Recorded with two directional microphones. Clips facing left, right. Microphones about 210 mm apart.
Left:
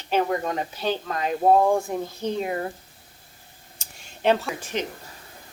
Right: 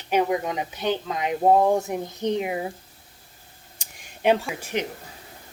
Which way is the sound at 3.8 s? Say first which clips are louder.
Right 1 dB; 15° right (ahead or behind).